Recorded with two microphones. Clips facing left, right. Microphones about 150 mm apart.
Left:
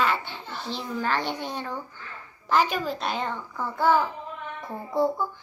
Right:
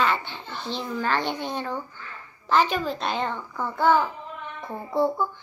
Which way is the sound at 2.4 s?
5° left (ahead or behind).